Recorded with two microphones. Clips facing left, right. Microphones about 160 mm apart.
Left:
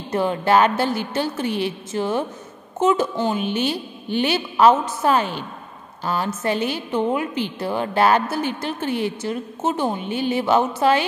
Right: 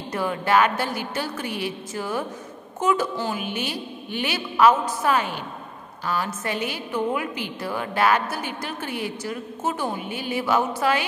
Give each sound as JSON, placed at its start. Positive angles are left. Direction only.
{"t": 0.1, "sound": "a woman's voice", "side_deg": 25}